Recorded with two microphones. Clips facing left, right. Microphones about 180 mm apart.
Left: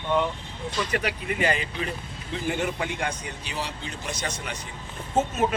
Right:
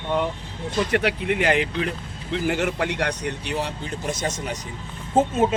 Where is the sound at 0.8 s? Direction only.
65° right (ahead or behind).